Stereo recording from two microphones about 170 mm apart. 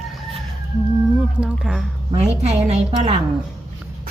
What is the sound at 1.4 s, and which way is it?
Speech, 5° right (ahead or behind).